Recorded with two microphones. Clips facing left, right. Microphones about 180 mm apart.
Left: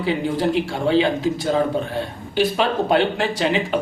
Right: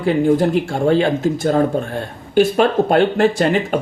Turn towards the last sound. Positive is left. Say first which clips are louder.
# right 4 dB
turn(degrees=-50)  # may be behind; listen again after turning